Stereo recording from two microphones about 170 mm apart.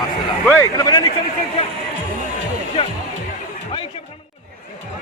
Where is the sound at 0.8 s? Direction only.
25° left (ahead or behind).